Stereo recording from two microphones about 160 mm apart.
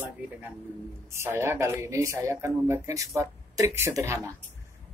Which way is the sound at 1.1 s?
15° right (ahead or behind).